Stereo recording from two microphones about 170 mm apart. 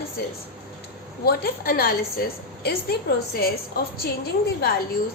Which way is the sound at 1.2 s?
65° left (ahead or behind).